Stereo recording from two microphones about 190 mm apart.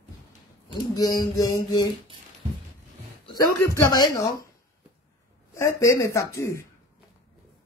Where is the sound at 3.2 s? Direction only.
20° left (ahead or behind).